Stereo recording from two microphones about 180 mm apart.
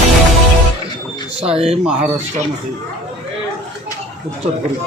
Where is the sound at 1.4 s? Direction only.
35° right (ahead or behind).